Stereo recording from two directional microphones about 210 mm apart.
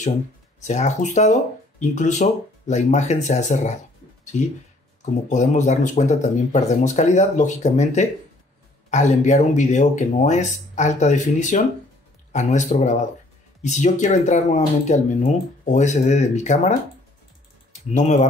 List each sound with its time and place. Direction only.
0.6 s speech: 35° left (ahead or behind)
5.3 s speech: 35° left (ahead or behind)
17.9 s speech: 35° left (ahead or behind)